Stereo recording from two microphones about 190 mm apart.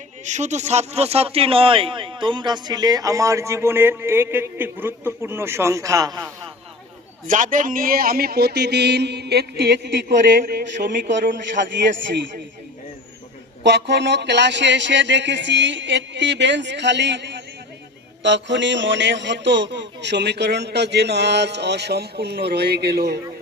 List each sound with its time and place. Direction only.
0.3 s speech: 40° right (ahead or behind); by 6.3 s 20° right (ahead or behind)
7.3 s a man's voice: 45° right (ahead or behind); by 10.2 s 60° right (ahead or behind)
10.4 s a man's voice: 45° right (ahead or behind)
13.8 s a man's voice: 65° right (ahead or behind)